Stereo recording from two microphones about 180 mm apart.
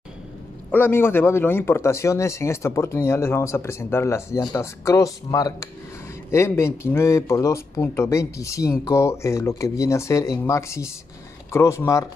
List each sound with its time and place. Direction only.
0.7 s speech: 10° left (ahead or behind)